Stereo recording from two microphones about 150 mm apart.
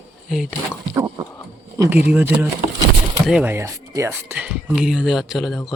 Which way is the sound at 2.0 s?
10° right (ahead or behind).